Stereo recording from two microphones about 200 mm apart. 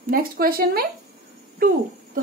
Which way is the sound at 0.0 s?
45° right (ahead or behind).